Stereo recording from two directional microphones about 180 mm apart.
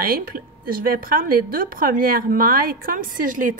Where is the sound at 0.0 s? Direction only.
55° right (ahead or behind).